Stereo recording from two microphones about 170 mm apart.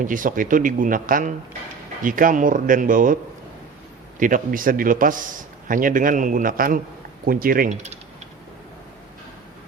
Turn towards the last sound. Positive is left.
turn(degrees=-55)  # may be behind; listen again after turning